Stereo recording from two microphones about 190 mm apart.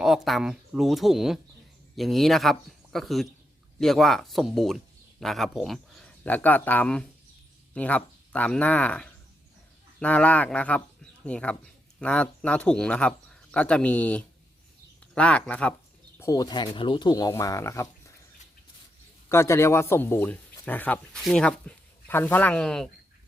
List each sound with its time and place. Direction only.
0.0 s speech: centre (ahead or behind); by 17.8 s 15° left (ahead or behind)
19.3 s speech: 15° left (ahead or behind)